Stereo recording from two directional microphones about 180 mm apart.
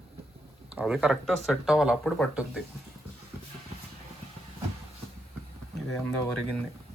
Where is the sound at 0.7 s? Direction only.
5° right (ahead or behind).